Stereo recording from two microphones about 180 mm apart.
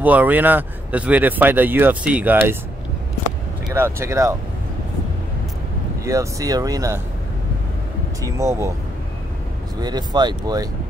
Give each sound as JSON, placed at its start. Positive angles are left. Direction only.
{"t": 0.0, "sound": "speech", "side_deg": -10}
{"t": 3.7, "sound": "speech", "side_deg": -15}
{"t": 6.0, "sound": "speech", "side_deg": -20}
{"t": 8.2, "sound": "speech", "side_deg": -20}
{"t": 9.8, "sound": "speech", "side_deg": -25}